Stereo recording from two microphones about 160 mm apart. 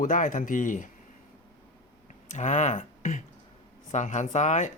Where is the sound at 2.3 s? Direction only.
45° left (ahead or behind).